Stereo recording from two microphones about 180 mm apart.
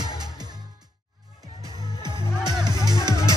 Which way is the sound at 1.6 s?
25° right (ahead or behind).